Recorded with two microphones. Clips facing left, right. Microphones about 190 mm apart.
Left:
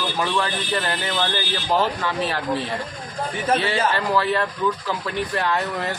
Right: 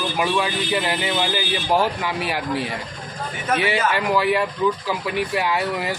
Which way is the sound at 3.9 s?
15° right (ahead or behind).